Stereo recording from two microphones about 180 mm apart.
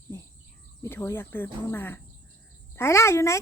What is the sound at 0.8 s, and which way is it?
Speech, 15° left (ahead or behind).